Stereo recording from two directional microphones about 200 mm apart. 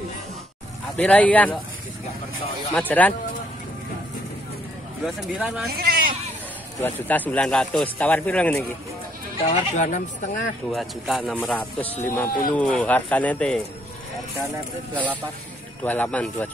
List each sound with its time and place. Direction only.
0.9 s a man's voice: 5° left (ahead or behind)
2.9 s a man's voice: 10° left (ahead or behind)
5.0 s speech: centre (ahead or behind)
5.8 s hubbub: 45° right (ahead or behind)
6.8 s a man's voice: 10° left (ahead or behind)
9.4 s speech: 35° left (ahead or behind)
10.7 s a man's voice: centre (ahead or behind)
15.8 s a man's voice: 10° left (ahead or behind)